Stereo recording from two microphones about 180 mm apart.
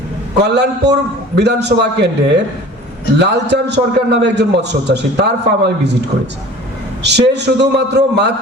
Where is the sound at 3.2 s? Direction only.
70° right (ahead or behind).